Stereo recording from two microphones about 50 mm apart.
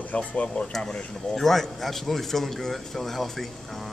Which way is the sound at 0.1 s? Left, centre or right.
Left.